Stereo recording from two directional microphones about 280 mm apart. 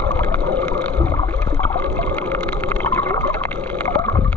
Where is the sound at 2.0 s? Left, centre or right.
Centre.